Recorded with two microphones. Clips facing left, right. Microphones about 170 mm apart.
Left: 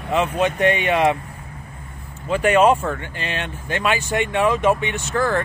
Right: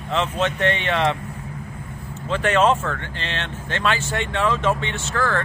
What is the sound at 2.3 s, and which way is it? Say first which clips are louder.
Speech: left 3 dB; 10° left (ahead or behind).